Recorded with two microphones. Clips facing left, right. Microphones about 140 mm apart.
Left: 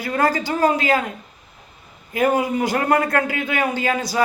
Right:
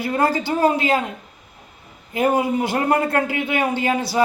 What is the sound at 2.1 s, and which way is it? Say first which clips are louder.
A man's voice: even; 25° right (ahead or behind).